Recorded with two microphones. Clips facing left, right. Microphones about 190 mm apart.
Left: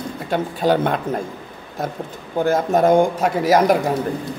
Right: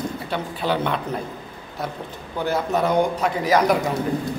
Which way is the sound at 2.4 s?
45° left (ahead or behind).